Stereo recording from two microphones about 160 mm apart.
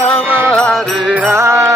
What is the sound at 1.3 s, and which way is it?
Music, 15° right (ahead or behind).